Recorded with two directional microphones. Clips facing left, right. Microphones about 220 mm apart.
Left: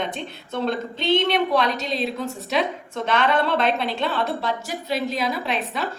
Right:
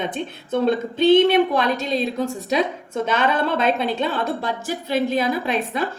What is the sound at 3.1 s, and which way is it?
A woman's voice, 45° right (ahead or behind).